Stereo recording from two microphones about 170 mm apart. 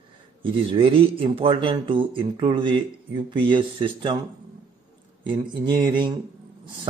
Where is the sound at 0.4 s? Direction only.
30° right (ahead or behind).